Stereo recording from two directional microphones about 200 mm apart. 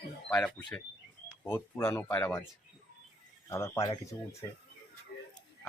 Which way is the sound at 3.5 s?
15° left (ahead or behind).